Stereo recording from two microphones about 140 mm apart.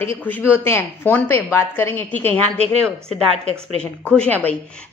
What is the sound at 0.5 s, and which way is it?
A woman's voice, 20° left (ahead or behind).